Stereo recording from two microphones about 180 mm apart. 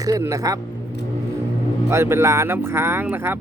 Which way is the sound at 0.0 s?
15° right (ahead or behind).